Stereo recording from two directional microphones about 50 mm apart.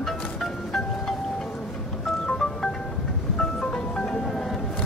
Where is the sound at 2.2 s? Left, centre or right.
Centre.